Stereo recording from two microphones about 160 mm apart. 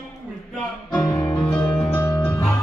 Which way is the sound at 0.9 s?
20° left (ahead or behind).